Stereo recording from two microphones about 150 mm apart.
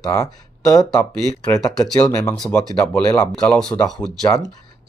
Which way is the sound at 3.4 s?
5° left (ahead or behind).